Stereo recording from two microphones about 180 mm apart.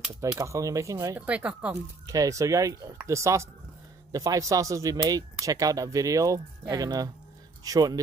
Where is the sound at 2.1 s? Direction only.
20° right (ahead or behind).